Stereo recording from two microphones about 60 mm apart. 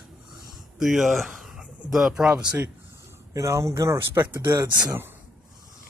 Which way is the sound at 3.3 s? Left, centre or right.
Right.